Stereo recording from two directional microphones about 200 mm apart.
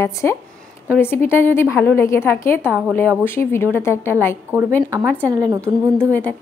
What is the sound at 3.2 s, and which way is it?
A woman's voice, 10° left (ahead or behind).